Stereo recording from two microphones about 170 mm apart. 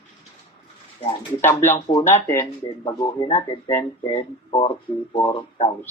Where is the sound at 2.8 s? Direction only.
30° left (ahead or behind).